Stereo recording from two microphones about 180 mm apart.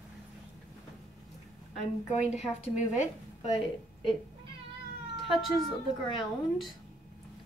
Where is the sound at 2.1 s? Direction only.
40° left (ahead or behind).